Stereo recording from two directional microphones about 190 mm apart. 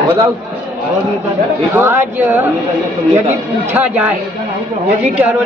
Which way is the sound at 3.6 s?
10° right (ahead or behind).